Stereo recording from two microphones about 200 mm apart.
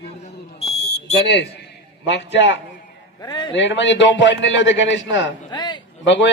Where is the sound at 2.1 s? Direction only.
65° left (ahead or behind).